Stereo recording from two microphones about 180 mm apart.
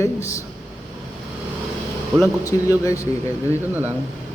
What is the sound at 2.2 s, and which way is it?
Speech, 20° left (ahead or behind).